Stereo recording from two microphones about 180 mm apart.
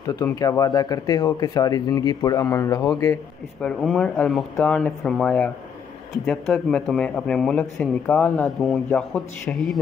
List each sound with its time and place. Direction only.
0.0 s speech: 20° left (ahead or behind)
3.9 s a man's voice: 5° left (ahead or behind)